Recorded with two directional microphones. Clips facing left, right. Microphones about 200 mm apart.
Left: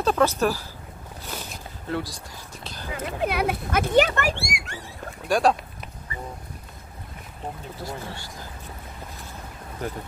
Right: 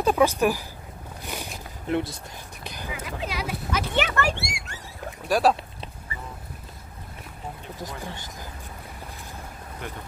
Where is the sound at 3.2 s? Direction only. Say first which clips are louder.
Left 9 dB; 55° left (ahead or behind).